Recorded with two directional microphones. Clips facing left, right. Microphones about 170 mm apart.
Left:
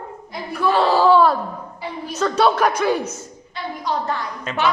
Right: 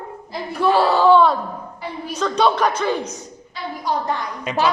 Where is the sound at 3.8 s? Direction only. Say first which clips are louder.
Right 1 dB; 15° right (ahead or behind).